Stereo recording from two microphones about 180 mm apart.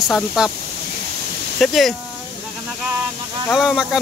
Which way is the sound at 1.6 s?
Centre (ahead or behind).